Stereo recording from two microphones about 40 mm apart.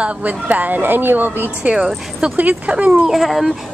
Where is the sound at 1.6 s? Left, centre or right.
Right.